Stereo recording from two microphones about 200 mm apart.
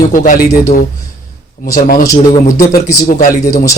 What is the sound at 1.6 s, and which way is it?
Speech, 45° left (ahead or behind).